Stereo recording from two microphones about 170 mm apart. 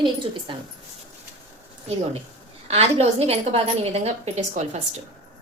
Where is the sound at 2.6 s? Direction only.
35° right (ahead or behind).